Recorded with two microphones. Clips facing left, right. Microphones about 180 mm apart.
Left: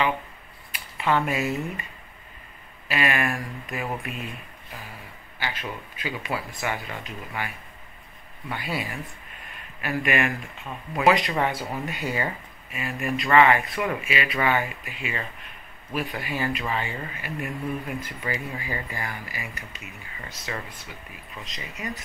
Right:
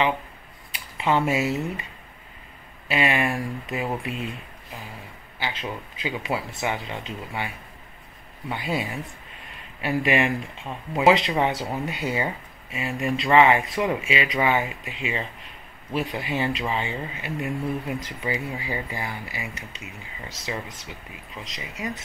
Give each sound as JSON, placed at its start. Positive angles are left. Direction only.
{"t": 0.7, "sound": "a sound", "side_deg": -20}
{"t": 2.9, "sound": "speech", "side_deg": -20}
{"t": 5.4, "sound": "speech", "side_deg": -20}
{"t": 21.5, "sound": "speech", "side_deg": -15}